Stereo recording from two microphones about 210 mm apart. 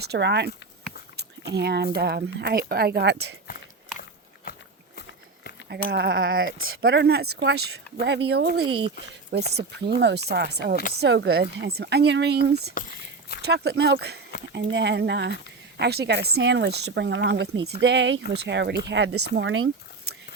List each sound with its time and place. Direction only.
0.0 s speech: 50° right (ahead or behind)
4.9 s vehicle: 50° left (ahead or behind)
5.9 s speech: 50° right (ahead or behind)
6.4 s speech: 70° right (ahead or behind)
6.8 s speech: 50° right (ahead or behind)